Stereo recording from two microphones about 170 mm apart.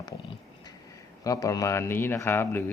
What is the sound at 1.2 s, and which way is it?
A man's voice, 20° left (ahead or behind).